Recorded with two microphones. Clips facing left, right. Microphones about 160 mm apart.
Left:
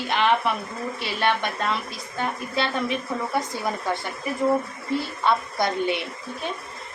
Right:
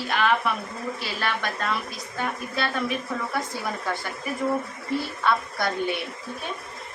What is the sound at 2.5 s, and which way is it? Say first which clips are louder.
Speech: left 2 dB; 25° left (ahead or behind).